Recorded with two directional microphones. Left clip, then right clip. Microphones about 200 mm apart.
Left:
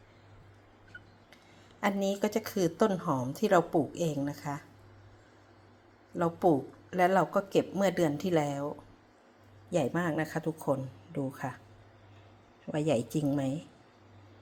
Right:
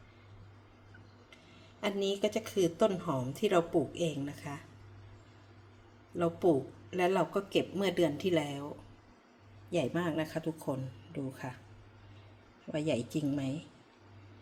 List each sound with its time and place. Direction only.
1.8 s a woman's voice: 20° left (ahead or behind)
6.1 s speech: 15° left (ahead or behind)
9.6 s speech: 10° left (ahead or behind)
12.7 s speech: 15° left (ahead or behind)